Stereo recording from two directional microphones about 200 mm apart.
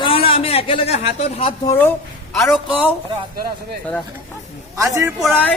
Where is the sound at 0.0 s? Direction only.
25° left (ahead or behind).